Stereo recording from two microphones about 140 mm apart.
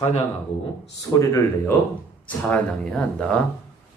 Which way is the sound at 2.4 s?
10° left (ahead or behind).